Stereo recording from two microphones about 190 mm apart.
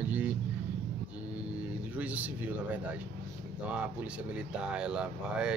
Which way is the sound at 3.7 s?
5° right (ahead or behind).